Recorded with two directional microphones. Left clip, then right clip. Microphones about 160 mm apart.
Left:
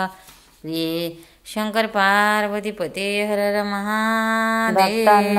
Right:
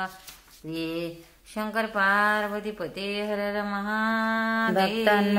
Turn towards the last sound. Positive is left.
turn(degrees=-40)  # may be behind; listen again after turning